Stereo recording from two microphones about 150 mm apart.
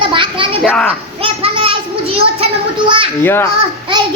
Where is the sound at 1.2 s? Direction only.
40° right (ahead or behind).